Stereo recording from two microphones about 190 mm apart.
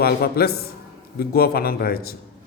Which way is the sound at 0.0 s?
55° left (ahead or behind).